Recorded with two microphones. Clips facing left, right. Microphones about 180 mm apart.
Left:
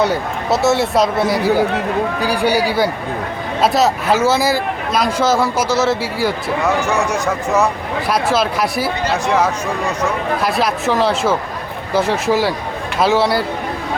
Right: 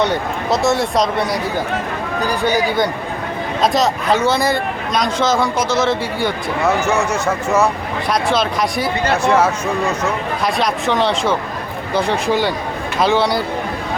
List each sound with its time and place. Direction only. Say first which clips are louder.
0.0 s speech: left 1 dB; 5° left (ahead or behind)
10.4 s speech: right 1 dB; 5° left (ahead or behind)